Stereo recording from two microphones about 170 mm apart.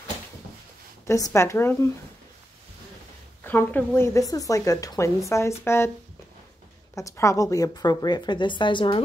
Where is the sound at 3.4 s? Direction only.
10° left (ahead or behind).